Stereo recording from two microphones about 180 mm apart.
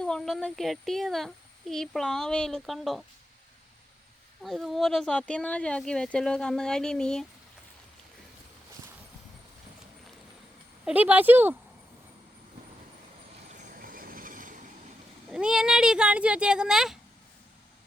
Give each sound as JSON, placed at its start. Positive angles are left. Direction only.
{"t": 0.0, "sound": "a woman's voice", "side_deg": 5}
{"t": 4.4, "sound": "a woman's voice", "side_deg": 0}
{"t": 10.8, "sound": "speech", "side_deg": -10}
{"t": 13.5, "sound": "train", "side_deg": -50}
{"t": 15.3, "sound": "a woman's voice", "side_deg": -5}